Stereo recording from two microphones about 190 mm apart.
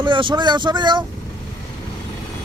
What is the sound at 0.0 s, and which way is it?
Speech, 25° right (ahead or behind).